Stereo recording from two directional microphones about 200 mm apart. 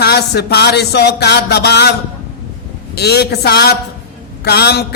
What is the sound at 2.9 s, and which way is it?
A man's voice, 55° left (ahead or behind).